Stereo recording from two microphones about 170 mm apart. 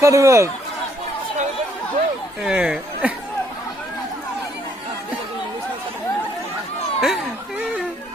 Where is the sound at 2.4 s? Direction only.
5° right (ahead or behind).